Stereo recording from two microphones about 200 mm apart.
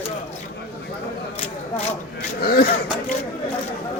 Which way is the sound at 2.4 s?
50° left (ahead or behind).